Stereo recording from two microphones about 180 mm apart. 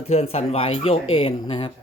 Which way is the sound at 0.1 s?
35° left (ahead or behind).